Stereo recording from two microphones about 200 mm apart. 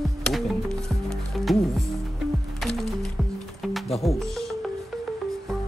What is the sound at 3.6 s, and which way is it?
Music, centre (ahead or behind).